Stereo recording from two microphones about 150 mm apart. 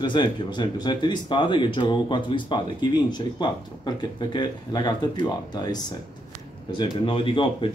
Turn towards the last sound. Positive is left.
turn(degrees=35)  # may be behind; listen again after turning